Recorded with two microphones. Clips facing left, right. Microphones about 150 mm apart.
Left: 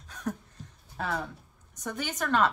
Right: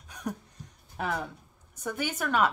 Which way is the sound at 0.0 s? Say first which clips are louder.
Left 1 dB; 10° right (ahead or behind).